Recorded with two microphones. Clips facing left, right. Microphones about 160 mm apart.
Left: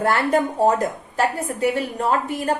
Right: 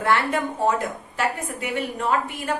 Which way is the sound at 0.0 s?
40° left (ahead or behind).